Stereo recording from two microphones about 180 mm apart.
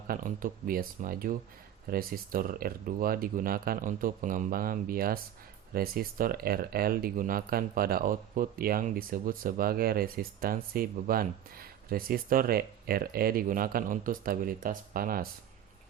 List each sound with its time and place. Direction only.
0.1 s speech: 50° right (ahead or behind)